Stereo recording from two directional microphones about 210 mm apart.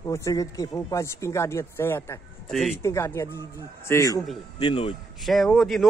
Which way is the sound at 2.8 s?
15° left (ahead or behind).